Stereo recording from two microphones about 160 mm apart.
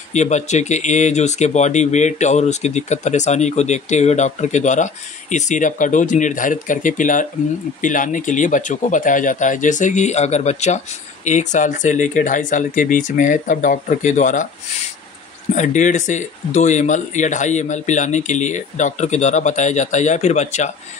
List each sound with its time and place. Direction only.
0.1 s speech: 45° left (ahead or behind)
15.5 s speech: 50° left (ahead or behind)